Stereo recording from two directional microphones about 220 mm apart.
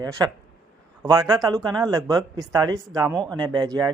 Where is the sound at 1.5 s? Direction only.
Centre (ahead or behind).